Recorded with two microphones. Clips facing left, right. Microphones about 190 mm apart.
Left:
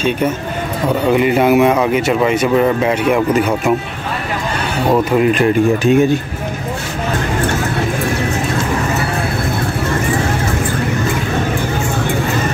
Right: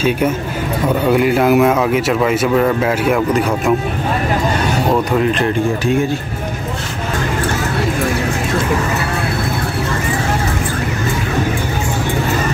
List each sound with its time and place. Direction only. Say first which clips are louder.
1.0 s speech: left 1 dB; centre (ahead or behind)
5.3 s speech: left 4 dB; 15° left (ahead or behind)